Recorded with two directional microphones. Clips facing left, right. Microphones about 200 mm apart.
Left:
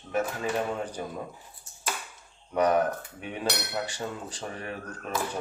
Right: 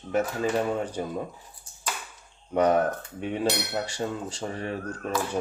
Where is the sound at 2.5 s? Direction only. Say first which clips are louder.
Right 2 dB; 25° right (ahead or behind).